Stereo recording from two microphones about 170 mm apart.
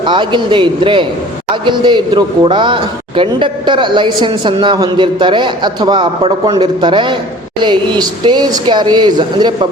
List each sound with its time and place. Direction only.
0.0 s a man's voice: 30° right (ahead or behind)